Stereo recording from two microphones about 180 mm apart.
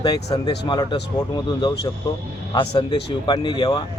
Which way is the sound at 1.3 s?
25° left (ahead or behind).